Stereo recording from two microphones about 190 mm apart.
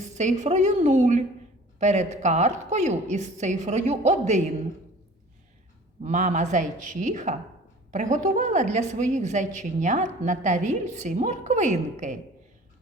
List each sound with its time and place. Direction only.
0.0 s a woman's voice: 40° right (ahead or behind)
6.0 s a woman's voice: 40° right (ahead or behind)